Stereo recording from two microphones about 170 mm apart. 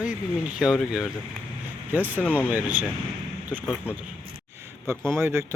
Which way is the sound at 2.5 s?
10° right (ahead or behind).